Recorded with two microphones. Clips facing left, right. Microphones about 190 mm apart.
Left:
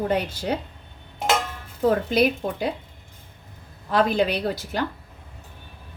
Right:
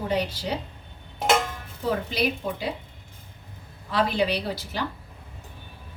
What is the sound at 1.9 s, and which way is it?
Speech, 50° left (ahead or behind).